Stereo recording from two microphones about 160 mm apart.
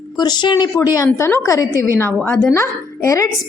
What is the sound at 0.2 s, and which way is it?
A woman's voice, 25° left (ahead or behind).